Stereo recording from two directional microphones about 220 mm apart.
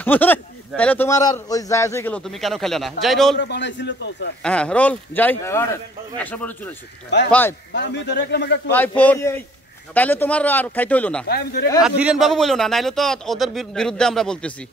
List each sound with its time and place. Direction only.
0.0 s a man's voice: 10° left (ahead or behind)
3.3 s a man's voice: 50° left (ahead or behind)
4.4 s a man's voice: 5° left (ahead or behind)
7.7 s a man's voice: 50° left (ahead or behind)
8.6 s a man's voice: 10° left (ahead or behind)
11.2 s a man's voice: 45° left (ahead or behind)
11.8 s a man's voice: 5° right (ahead or behind)